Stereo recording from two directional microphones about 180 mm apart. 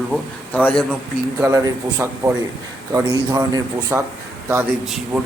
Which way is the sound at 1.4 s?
15° right (ahead or behind).